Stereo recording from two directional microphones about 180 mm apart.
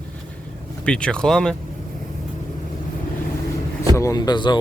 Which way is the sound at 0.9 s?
5° left (ahead or behind).